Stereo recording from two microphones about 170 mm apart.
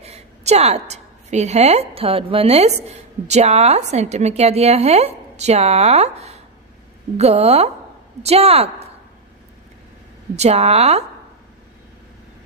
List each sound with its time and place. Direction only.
0.0 s a woman's voice: 40° right (ahead or behind)
10.3 s a woman's voice: 40° right (ahead or behind)